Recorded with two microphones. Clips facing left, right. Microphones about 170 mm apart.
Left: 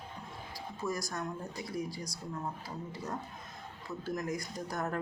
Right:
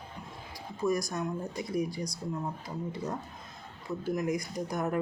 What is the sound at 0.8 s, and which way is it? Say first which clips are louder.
Speech: right 7 dB; 15° right (ahead or behind).